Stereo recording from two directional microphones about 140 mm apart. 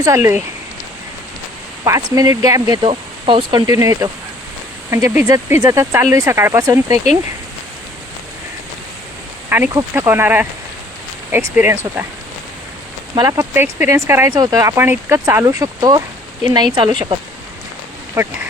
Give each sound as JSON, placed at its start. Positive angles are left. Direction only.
{"t": 0.0, "sound": "speech", "side_deg": -20}
{"t": 1.8, "sound": "speech", "side_deg": -25}
{"t": 3.8, "sound": "speech", "side_deg": -25}
{"t": 9.5, "sound": "speech", "side_deg": -15}
{"t": 13.1, "sound": "speech", "side_deg": -25}
{"t": 15.4, "sound": "speech", "side_deg": -25}